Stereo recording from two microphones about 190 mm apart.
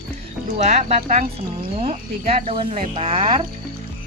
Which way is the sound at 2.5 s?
30° right (ahead or behind).